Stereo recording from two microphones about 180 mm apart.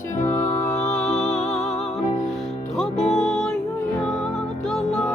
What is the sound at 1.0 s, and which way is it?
Music, 40° left (ahead or behind).